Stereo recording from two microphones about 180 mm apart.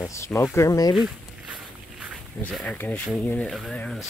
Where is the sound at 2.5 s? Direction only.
5° left (ahead or behind).